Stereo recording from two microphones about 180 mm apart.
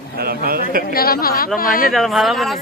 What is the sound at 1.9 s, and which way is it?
Speech, centre (ahead or behind).